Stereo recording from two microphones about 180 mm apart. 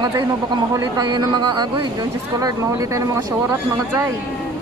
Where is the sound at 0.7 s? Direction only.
25° right (ahead or behind).